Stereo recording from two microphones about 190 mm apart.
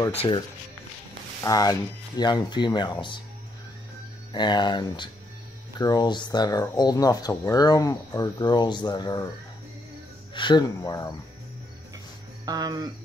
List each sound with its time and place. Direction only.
1.4 s speech: 20° left (ahead or behind)
4.3 s speech: 25° left (ahead or behind)
10.3 s speech: 25° left (ahead or behind)
12.4 s speech: 20° right (ahead or behind)